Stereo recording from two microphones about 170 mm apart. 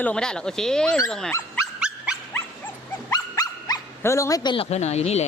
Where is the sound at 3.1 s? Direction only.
20° left (ahead or behind).